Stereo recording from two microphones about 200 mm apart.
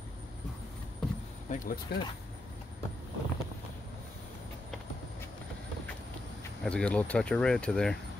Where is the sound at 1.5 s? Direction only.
40° left (ahead or behind).